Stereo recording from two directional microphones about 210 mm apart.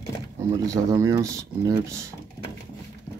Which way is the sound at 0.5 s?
15° right (ahead or behind).